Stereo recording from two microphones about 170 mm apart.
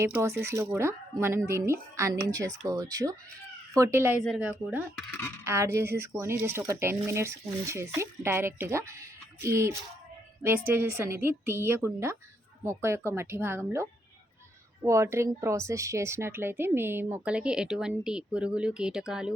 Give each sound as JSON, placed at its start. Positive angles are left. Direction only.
{"t": 0.0, "sound": "a woman's voice", "side_deg": -15}
{"t": 14.8, "sound": "a woman's voice", "side_deg": -15}